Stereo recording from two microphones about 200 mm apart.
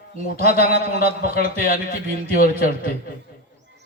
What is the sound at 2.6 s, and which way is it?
Speech, 45° left (ahead or behind).